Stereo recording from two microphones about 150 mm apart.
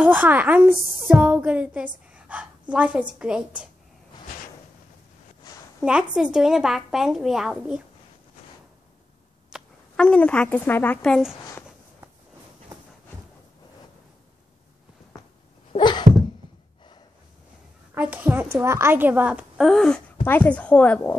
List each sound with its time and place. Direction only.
0.0 s a woman's voice: 10° right (ahead or behind)
5.4 s a sound: 25° left (ahead or behind)
5.8 s a woman's voice: 5° right (ahead or behind)
9.5 s speech: 5° left (ahead or behind)
16.1 s a sound: 45° right (ahead or behind)
17.9 s a woman's voice: 10° right (ahead or behind); by 21.2 s 10° left (ahead or behind)